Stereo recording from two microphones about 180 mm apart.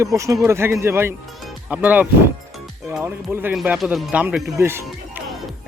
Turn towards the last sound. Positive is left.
turn(degrees=-15)  # may be behind; listen again after turning